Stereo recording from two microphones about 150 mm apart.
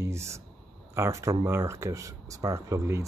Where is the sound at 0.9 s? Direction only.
20° right (ahead or behind).